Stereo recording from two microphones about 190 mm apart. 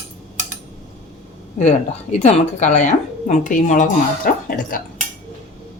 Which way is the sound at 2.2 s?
40° left (ahead or behind).